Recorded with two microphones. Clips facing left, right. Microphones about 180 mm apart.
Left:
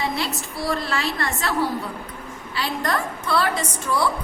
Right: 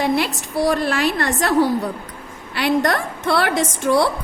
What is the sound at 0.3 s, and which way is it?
A woman's voice, 70° right (ahead or behind).